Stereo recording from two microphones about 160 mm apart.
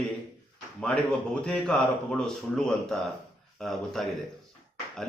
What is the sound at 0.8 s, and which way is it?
A man's voice, 5° left (ahead or behind).